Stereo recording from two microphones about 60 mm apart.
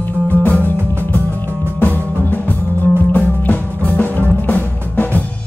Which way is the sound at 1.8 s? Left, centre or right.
Left.